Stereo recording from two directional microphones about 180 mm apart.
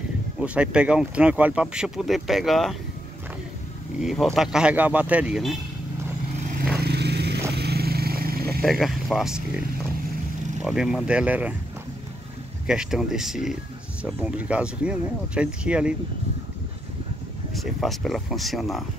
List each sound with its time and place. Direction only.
0.4 s speech: 5° right (ahead or behind)
4.0 s speech: centre (ahead or behind)
6.8 s vehicle: 65° right (ahead or behind)
8.6 s speech: centre (ahead or behind)
10.6 s speech: centre (ahead or behind)
12.6 s speech: 5° right (ahead or behind)
17.6 s speech: centre (ahead or behind)